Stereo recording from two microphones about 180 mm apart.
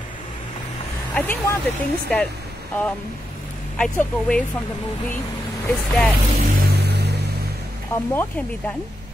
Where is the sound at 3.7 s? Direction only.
5° left (ahead or behind).